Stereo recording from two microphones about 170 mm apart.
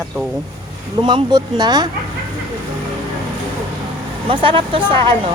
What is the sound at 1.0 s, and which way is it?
Speech, 25° right (ahead or behind).